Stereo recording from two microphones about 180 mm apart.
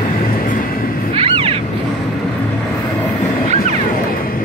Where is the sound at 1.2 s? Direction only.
30° right (ahead or behind).